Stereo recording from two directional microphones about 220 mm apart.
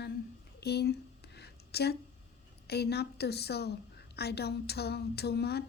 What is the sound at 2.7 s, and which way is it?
A woman's voice, 50° left (ahead or behind).